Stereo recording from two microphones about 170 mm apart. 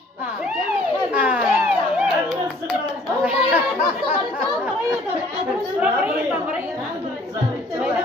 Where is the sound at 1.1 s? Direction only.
5° right (ahead or behind).